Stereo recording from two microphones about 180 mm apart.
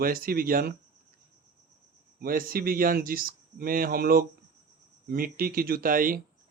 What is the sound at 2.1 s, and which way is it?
Speech, 55° right (ahead or behind).